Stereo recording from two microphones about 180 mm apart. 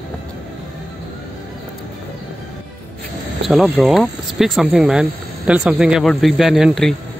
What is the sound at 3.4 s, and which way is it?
Speech, centre (ahead or behind).